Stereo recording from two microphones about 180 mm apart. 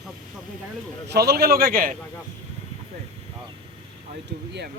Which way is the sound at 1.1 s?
60° right (ahead or behind).